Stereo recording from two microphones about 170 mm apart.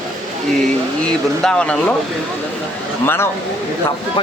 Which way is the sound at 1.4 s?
5° left (ahead or behind).